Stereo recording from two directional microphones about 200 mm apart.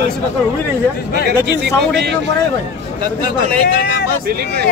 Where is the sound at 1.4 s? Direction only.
60° right (ahead or behind).